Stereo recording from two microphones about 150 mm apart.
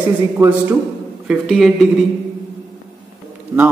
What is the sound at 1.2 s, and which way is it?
Speech, centre (ahead or behind).